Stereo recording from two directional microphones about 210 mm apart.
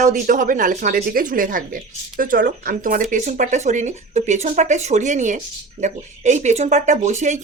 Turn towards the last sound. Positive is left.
turn(degrees=-35)  # may be behind; listen again after turning